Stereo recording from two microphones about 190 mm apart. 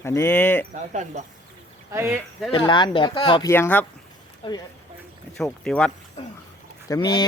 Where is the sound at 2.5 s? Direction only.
25° left (ahead or behind).